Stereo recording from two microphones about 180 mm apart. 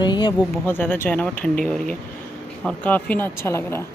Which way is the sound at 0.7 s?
10° left (ahead or behind).